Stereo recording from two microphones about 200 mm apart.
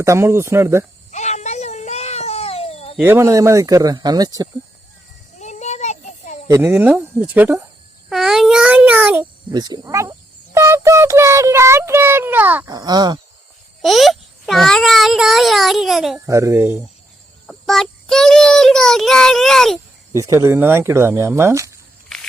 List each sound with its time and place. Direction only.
0.0 s speech: 15° right (ahead or behind)
1.1 s a sound: 35° left (ahead or behind)
3.0 s speech: 10° right (ahead or behind)
5.4 s child singing: 35° left (ahead or behind)
6.5 s a child's voice: 10° right (ahead or behind)
9.5 s a child's voice: 20° right (ahead or behind)
12.6 s speech: 20° right (ahead or behind)
13.8 s a child's voice: centre (ahead or behind)
16.2 s speech: 15° right (ahead or behind)
17.4 s a child's voice: centre (ahead or behind)
20.1 s speech: 15° right (ahead or behind)